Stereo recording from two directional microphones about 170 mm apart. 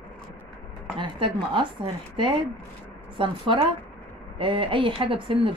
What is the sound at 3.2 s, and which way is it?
Speech, 30° right (ahead or behind).